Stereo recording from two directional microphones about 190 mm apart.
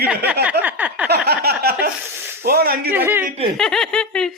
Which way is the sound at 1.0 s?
60° right (ahead or behind).